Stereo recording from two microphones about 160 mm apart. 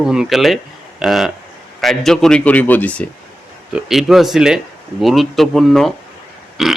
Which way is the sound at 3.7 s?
5° right (ahead or behind).